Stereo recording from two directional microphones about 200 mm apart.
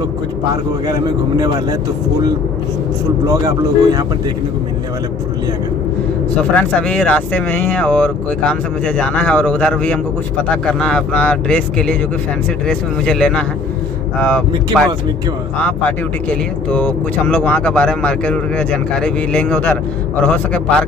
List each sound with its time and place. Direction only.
0.8 s a man's voice: 20° right (ahead or behind)
3.3 s speech: 20° right (ahead or behind)
6.3 s speech: 5° left (ahead or behind)
16.7 s speech: 5° left (ahead or behind)